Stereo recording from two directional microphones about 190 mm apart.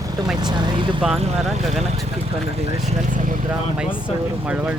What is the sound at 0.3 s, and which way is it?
Speech, 25° right (ahead or behind).